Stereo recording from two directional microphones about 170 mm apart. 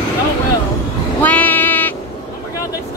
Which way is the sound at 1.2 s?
10° left (ahead or behind).